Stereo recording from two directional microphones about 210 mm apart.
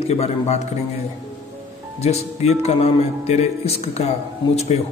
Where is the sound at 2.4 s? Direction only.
30° left (ahead or behind).